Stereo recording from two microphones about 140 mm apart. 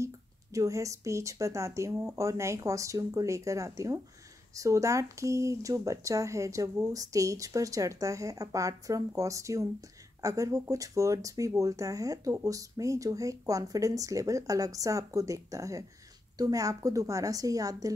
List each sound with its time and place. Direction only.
0.0 s speech: 25° right (ahead or behind)